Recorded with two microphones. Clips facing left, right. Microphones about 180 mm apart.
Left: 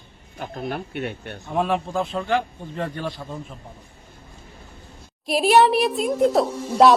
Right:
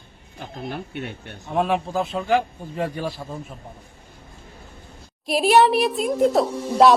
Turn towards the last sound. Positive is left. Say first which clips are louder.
# even
turn(degrees=0)  # may be behind; listen again after turning